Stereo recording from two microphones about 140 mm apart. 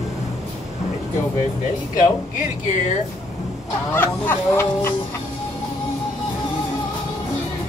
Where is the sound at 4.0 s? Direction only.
15° left (ahead or behind).